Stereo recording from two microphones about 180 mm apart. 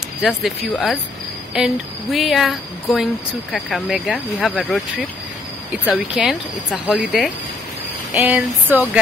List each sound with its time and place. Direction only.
0.5 s speech: centre (ahead or behind)
5.9 s speech: 5° right (ahead or behind)
8.1 s a sound: 5° right (ahead or behind)